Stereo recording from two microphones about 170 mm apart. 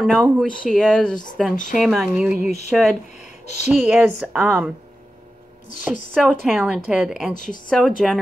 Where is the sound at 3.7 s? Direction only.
5° right (ahead or behind).